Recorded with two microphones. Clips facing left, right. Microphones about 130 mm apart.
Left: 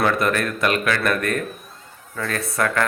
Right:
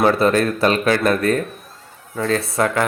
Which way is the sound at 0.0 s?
30° right (ahead or behind).